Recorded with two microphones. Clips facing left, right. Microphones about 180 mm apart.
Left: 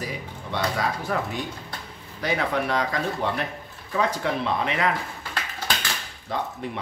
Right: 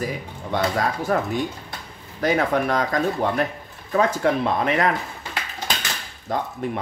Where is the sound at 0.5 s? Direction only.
45° right (ahead or behind).